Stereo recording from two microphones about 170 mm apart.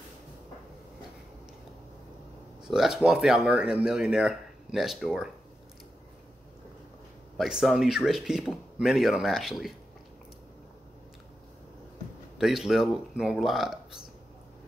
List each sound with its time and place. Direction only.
2.6 s speech: 5° right (ahead or behind)
7.3 s speech: centre (ahead or behind)
12.4 s speech: centre (ahead or behind)